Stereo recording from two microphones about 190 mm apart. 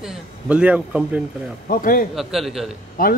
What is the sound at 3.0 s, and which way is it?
Speech, 50° left (ahead or behind).